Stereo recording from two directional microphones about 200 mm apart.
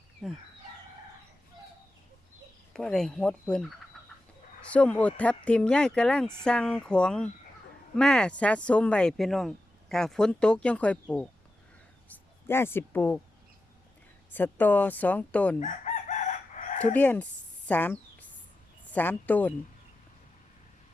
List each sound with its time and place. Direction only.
0.2 s speech: centre (ahead or behind)
2.7 s speech: 5° left (ahead or behind)
3.9 s frog: centre (ahead or behind)
4.6 s speech: 5° left (ahead or behind)
12.0 s speech: 10° left (ahead or behind)
14.3 s speech: 10° left (ahead or behind)
15.6 s chicken: 35° left (ahead or behind)
16.8 s speech: 10° left (ahead or behind)
17.7 s a sound: 10° left (ahead or behind)
18.9 s speech: 10° left (ahead or behind)